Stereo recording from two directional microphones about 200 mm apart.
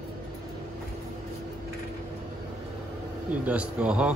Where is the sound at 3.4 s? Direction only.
5° right (ahead or behind).